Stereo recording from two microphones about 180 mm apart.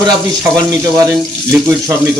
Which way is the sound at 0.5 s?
20° right (ahead or behind).